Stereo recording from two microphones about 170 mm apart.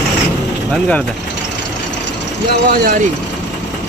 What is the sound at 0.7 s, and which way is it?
Speech, 5° left (ahead or behind).